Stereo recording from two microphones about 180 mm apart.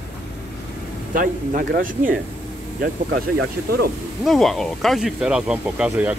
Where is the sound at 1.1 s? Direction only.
50° right (ahead or behind).